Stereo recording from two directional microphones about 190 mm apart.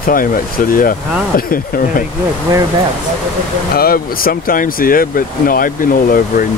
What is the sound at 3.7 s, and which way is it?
Speech, 50° left (ahead or behind).